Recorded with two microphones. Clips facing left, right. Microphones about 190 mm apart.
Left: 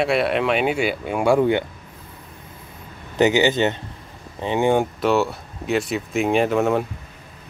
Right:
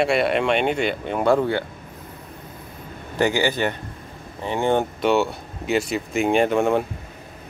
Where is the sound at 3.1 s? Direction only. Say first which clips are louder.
Left 4 dB; 20° left (ahead or behind).